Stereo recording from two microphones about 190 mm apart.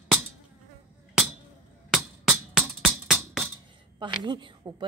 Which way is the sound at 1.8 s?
Centre (ahead or behind).